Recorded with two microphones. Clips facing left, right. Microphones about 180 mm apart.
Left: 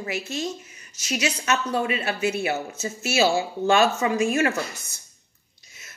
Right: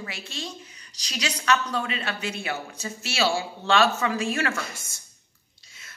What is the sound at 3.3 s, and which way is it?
Speech, 20° left (ahead or behind).